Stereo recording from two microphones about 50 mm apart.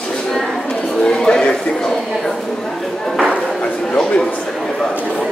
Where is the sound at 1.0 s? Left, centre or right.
Centre.